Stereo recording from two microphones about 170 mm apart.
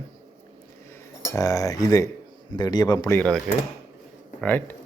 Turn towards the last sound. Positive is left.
turn(degrees=10)  # may be behind; listen again after turning